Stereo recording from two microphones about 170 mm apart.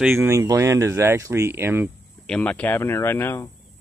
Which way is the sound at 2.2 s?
5° left (ahead or behind).